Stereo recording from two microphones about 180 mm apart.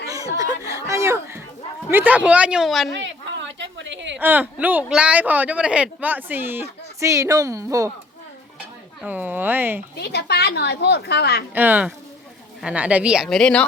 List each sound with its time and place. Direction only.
0.3 s speech: 20° right (ahead or behind); by 2.9 s centre (ahead or behind)
3.0 s a sound: 85° right
4.2 s speech: 10° right (ahead or behind)
9.0 s speech: 10° right (ahead or behind)
9.9 s speech: 65° left (ahead or behind)
11.5 s speech: 10° right (ahead or behind)